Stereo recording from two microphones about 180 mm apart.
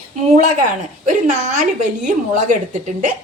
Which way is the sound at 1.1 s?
45° right (ahead or behind).